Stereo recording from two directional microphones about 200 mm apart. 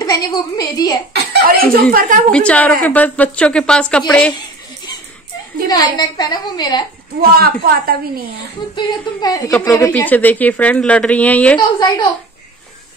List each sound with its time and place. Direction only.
0.0 s a woman's voice: 20° left (ahead or behind)
1.1 s speech: 50° right (ahead or behind)
2.3 s speech: 5° left (ahead or behind)
5.7 s a woman's voice: 20° left (ahead or behind)
7.2 s a woman's voice: 50° right (ahead or behind)
8.7 s a woman's voice: 20° left (ahead or behind)